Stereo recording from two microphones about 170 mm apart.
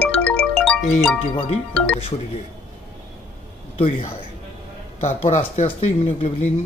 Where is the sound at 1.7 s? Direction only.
5° left (ahead or behind).